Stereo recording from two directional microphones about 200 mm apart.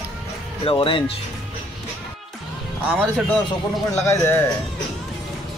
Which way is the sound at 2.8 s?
5° right (ahead or behind).